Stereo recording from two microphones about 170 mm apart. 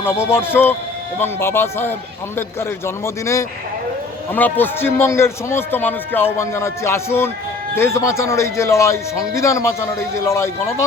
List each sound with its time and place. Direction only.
0.0 s a man's voice: 15° left (ahead or behind)